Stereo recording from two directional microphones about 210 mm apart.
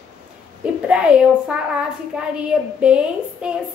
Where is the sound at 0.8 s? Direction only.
5° right (ahead or behind).